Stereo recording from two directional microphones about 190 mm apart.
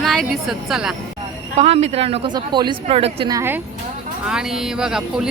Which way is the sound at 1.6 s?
35° right (ahead or behind).